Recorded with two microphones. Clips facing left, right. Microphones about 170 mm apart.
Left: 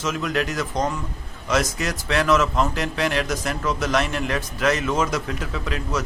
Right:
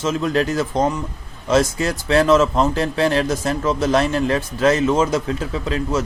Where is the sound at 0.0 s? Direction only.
30° right (ahead or behind).